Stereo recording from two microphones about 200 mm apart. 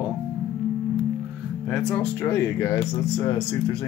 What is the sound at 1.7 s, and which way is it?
Speech, 5° left (ahead or behind).